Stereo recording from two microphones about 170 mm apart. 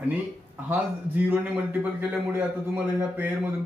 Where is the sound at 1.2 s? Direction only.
10° right (ahead or behind).